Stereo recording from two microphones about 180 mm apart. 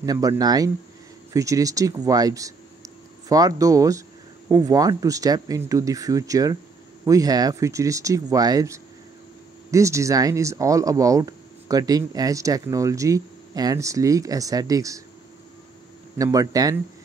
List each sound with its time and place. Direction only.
0.0 s speech: 20° right (ahead or behind)
16.2 s speech: 20° right (ahead or behind)